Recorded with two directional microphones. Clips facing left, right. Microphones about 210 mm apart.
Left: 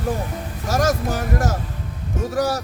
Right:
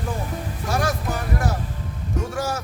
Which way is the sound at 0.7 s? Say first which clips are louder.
Left 4 dB; 40° left (ahead or behind).